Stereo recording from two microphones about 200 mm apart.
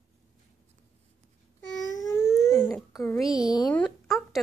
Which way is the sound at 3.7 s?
5° left (ahead or behind).